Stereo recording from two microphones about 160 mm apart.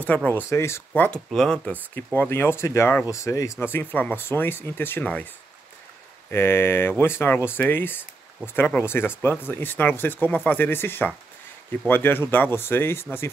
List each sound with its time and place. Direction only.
0.0 s speech: 10° left (ahead or behind)
6.3 s speech: 15° left (ahead or behind)